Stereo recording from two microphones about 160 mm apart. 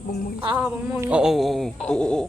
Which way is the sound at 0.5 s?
10° right (ahead or behind).